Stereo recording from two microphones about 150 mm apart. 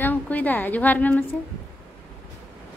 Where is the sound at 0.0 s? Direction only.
10° left (ahead or behind).